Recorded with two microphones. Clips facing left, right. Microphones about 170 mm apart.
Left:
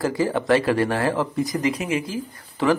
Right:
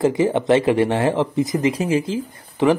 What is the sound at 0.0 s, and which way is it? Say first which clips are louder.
Speech: right 5 dB; 20° right (ahead or behind).